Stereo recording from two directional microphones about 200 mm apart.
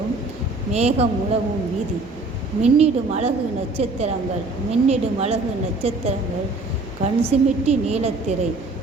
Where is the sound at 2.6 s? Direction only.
35° right (ahead or behind).